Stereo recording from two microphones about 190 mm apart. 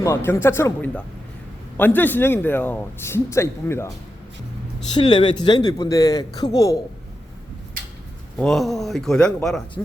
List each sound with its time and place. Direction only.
0.0 s speech: 15° left (ahead or behind)
4.9 s a man's voice: 25° left (ahead or behind)
8.4 s speech: centre (ahead or behind)